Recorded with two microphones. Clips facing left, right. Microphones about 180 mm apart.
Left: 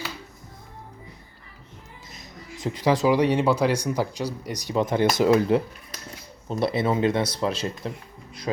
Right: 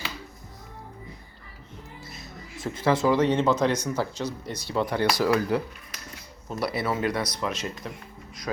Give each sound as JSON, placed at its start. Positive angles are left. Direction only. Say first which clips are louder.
{"t": 2.0, "sound": "speech", "louder": "even", "side_deg": 15}